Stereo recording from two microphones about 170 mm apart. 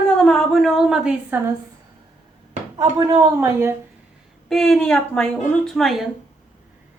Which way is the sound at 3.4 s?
15° right (ahead or behind).